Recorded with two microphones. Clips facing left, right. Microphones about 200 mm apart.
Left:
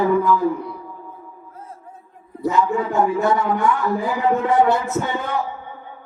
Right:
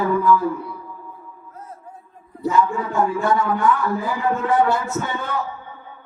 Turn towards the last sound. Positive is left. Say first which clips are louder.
# left 2 dB
turn(degrees=25)  # may be behind; listen again after turning